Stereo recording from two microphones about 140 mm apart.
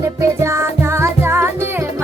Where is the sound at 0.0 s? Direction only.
20° right (ahead or behind).